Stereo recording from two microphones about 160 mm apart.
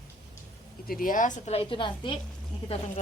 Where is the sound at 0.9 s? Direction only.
60° left (ahead or behind); by 2.2 s 30° left (ahead or behind).